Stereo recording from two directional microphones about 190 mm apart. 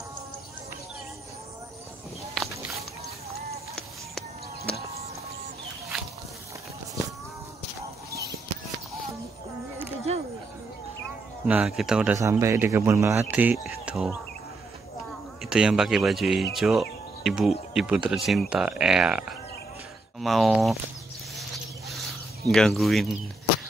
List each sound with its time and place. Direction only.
2.3 s walk: centre (ahead or behind)
10.1 s a sound: 35° right (ahead or behind)
11.4 s speech: 5° right (ahead or behind)
12.2 s speech: 15° right (ahead or behind)
15.5 s speech: 5° right (ahead or behind)
21.4 s rodents: centre (ahead or behind)
22.5 s speech: centre (ahead or behind)